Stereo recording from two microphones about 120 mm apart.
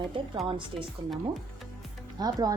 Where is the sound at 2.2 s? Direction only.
30° right (ahead or behind).